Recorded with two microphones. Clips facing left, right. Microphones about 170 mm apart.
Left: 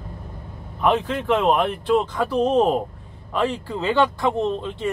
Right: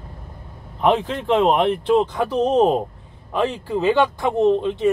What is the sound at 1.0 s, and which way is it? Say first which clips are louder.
Speech: right 2 dB; 20° right (ahead or behind).